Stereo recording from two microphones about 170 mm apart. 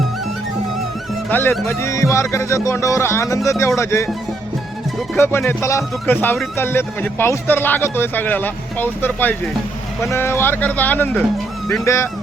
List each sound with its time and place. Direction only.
1.3 s speech: 10° left (ahead or behind)
5.5 s speech: 15° left (ahead or behind)